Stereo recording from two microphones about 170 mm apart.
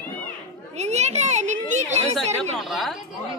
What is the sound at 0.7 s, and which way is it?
A child's voice, 40° right (ahead or behind).